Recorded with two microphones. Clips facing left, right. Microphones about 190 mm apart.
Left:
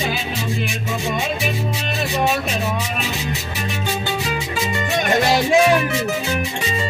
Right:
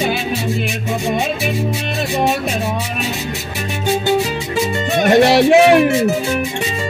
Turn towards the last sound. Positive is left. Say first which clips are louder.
# right 6 dB
turn(degrees=-65)  # may be behind; listen again after turning